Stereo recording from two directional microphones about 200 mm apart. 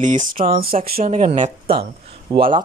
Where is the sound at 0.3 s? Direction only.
45° right (ahead or behind).